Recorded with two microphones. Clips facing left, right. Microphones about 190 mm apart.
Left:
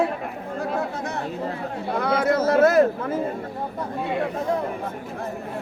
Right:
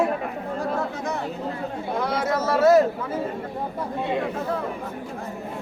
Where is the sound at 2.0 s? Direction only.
60° left (ahead or behind).